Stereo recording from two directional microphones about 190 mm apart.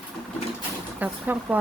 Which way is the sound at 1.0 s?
10° right (ahead or behind).